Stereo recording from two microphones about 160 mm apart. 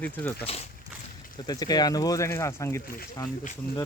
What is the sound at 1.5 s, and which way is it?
Speech, 25° left (ahead or behind).